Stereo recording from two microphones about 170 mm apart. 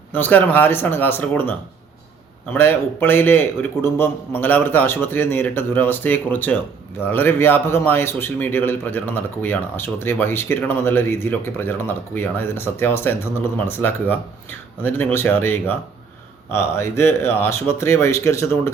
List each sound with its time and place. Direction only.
0.1 s a man's voice: 10° left (ahead or behind)